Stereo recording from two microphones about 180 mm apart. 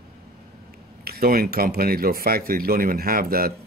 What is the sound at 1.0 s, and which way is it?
Speech, 55° right (ahead or behind).